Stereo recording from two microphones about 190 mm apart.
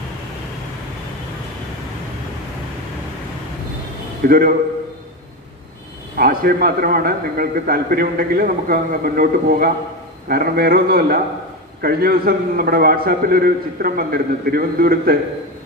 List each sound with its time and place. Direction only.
4.3 s a man's voice: 50° right (ahead or behind)
6.1 s a man's voice: 50° right (ahead or behind)